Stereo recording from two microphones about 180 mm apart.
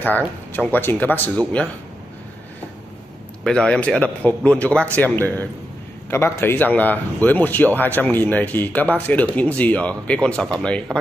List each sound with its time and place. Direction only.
0.5 s a man's voice: 10° left (ahead or behind)
3.4 s a man's voice: 5° left (ahead or behind)